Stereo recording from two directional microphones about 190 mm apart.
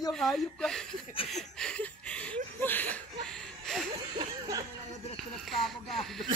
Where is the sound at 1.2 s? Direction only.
Centre (ahead or behind).